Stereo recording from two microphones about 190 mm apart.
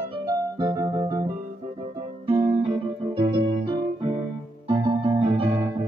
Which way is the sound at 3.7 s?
25° right (ahead or behind).